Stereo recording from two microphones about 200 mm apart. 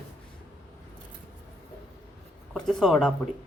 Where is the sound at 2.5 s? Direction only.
Centre (ahead or behind).